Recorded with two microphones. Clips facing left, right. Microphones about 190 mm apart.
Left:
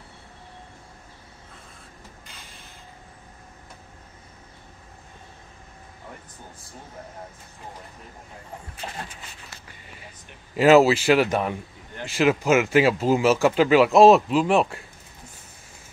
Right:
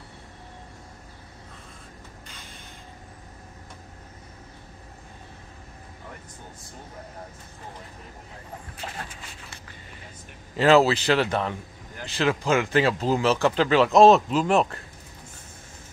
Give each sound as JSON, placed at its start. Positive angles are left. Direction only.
{"t": 10.5, "sound": "speech", "side_deg": 15}